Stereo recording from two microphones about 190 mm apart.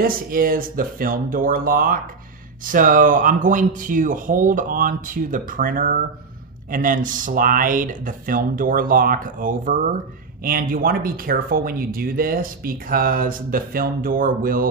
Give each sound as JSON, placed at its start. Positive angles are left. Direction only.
{"t": 0.0, "sound": "speech", "side_deg": -50}